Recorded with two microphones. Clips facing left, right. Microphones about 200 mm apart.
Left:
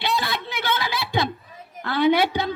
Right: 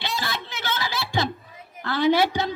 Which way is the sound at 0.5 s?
55° left (ahead or behind).